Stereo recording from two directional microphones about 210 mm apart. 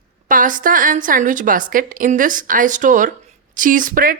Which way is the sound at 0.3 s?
40° right (ahead or behind).